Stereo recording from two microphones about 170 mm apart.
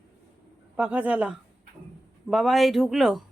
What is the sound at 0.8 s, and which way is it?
Speech, 10° right (ahead or behind).